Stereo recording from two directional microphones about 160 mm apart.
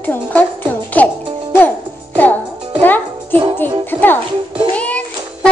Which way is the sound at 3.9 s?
10° left (ahead or behind).